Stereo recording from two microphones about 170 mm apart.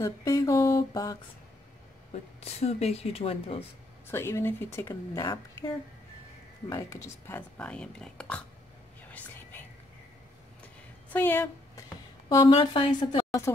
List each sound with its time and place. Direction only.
0.0 s a woman's voice: 20° left (ahead or behind)
2.4 s speech: 40° left (ahead or behind)
4.1 s speech: 15° left (ahead or behind)
11.1 s speech: 10° left (ahead or behind)
12.3 s a woman's voice: 25° left (ahead or behind)